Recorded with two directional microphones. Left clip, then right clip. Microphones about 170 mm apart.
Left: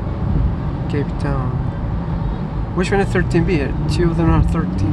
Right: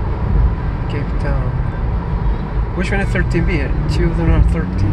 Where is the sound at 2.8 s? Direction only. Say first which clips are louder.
Left 3 dB; 25° left (ahead or behind).